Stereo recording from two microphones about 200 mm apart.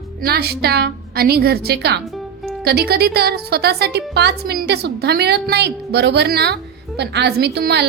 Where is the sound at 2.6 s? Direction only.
50° right (ahead or behind).